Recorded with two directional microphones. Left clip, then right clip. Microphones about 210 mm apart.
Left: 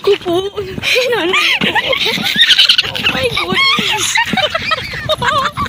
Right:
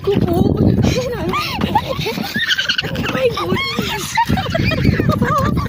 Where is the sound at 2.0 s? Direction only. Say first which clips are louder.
Left 8 dB; 20° right (ahead or behind); by 3.3 s 5° right (ahead or behind).